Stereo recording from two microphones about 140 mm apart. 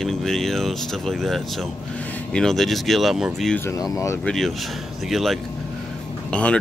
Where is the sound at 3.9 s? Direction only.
20° left (ahead or behind).